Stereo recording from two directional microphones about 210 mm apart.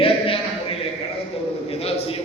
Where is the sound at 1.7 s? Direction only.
30° left (ahead or behind).